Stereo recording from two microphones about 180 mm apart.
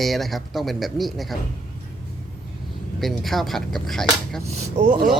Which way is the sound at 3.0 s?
Centre (ahead or behind).